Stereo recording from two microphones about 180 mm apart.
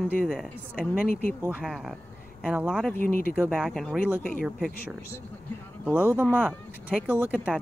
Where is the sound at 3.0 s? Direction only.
55° left (ahead or behind).